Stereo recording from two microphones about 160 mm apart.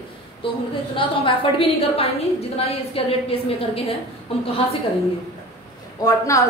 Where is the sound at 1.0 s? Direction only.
35° left (ahead or behind).